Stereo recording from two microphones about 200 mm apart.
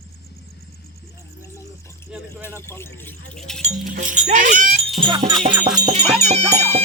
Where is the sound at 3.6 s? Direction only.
35° right (ahead or behind).